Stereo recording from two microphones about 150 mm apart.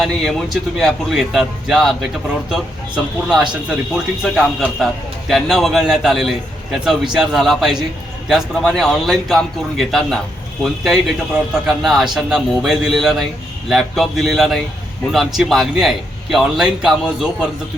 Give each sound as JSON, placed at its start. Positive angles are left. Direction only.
{"t": 0.0, "sound": "a man's voice", "side_deg": 0}